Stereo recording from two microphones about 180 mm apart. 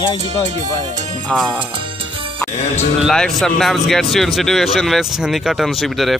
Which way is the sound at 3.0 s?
Centre (ahead or behind).